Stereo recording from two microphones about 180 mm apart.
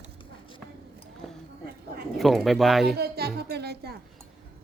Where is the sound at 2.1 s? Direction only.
Centre (ahead or behind).